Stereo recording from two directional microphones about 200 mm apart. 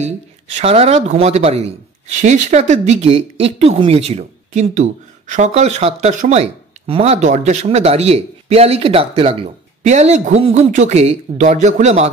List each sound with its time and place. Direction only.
0.6 s a man's voice: 30° right (ahead or behind)